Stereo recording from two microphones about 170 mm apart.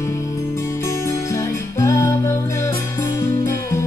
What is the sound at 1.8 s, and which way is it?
Music, 15° left (ahead or behind).